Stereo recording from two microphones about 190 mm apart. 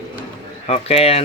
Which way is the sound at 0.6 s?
35° left (ahead or behind).